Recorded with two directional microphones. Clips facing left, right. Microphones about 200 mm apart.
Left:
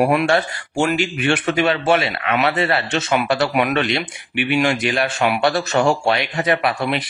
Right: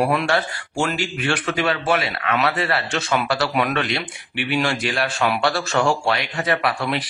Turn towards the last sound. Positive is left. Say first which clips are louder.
# left 2 dB
turn(degrees=20)  # may be behind; listen again after turning